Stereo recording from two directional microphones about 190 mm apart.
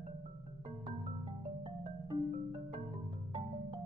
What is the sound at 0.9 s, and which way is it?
Marimba, 35° right (ahead or behind).